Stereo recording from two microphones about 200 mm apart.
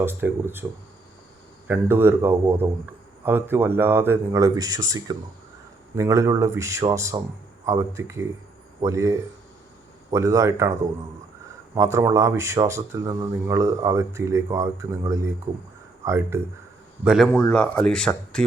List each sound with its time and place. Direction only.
0.0 s speech: 10° right (ahead or behind)
1.6 s speech: 10° right (ahead or behind)
17.0 s speech: 5° right (ahead or behind)